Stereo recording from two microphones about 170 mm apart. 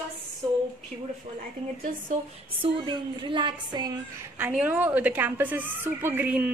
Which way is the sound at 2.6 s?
30° right (ahead or behind).